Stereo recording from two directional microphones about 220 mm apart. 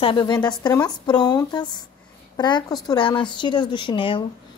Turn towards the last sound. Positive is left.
turn(degrees=20)  # may be behind; listen again after turning